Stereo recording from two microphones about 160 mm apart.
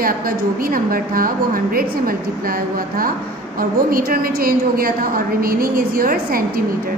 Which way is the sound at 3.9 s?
65° right (ahead or behind).